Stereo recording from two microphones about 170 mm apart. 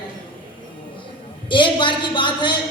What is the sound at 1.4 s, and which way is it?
A woman's voice, 30° left (ahead or behind).